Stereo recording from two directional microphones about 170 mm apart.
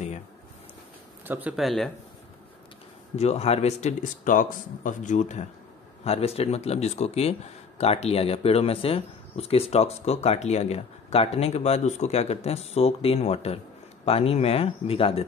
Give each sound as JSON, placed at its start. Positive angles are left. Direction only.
{"t": 1.2, "sound": "speech", "side_deg": -10}
{"t": 1.6, "sound": "speech", "side_deg": 0}
{"t": 3.2, "sound": "speech", "side_deg": 40}